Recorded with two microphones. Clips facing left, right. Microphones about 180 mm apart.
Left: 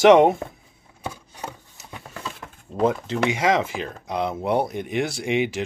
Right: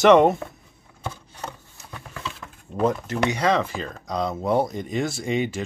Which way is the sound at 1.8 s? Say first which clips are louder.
Even; 15° left (ahead or behind).